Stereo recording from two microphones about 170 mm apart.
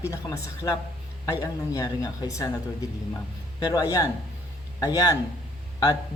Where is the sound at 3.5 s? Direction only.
25° left (ahead or behind).